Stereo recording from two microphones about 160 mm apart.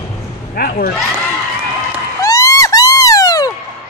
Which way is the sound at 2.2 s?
20° left (ahead or behind).